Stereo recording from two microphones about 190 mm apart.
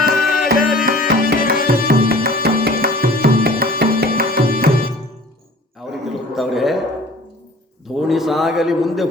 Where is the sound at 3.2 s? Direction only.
50° right (ahead or behind).